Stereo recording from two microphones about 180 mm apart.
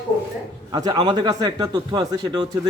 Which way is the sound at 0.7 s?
20° right (ahead or behind).